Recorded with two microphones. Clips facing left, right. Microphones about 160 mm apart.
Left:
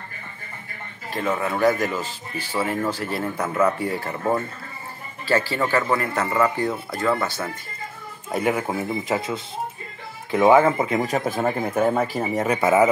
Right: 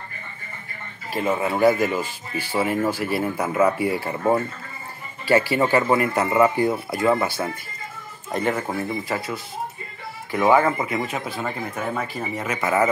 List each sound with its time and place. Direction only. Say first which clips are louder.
1.1 s speech: right 2 dB; 10° right (ahead or behind)
8.3 s speech: left 1 dB; 10° left (ahead or behind)
9.0 s speech: left 3 dB; 20° left (ahead or behind); by 11.8 s 50° left (ahead or behind)
12.5 s speech: left 3 dB; 20° left (ahead or behind)